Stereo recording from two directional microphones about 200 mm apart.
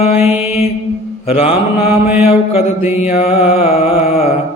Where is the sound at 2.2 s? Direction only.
30° left (ahead or behind).